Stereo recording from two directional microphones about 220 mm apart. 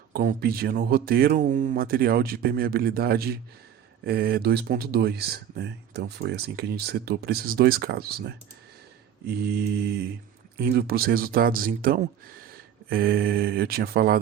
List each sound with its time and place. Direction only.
0.1 s speech: 40° right (ahead or behind)